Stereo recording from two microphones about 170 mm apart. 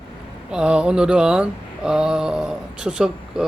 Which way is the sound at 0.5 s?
5° right (ahead or behind).